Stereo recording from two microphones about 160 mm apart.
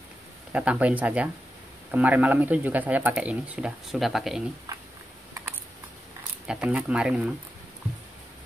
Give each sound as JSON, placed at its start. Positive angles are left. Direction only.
{"t": 0.5, "sound": "speech", "side_deg": -10}
{"t": 4.7, "sound": "a sound", "side_deg": -20}
{"t": 6.4, "sound": "speech", "side_deg": -5}